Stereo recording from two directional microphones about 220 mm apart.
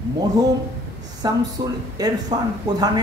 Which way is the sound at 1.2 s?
20° right (ahead or behind).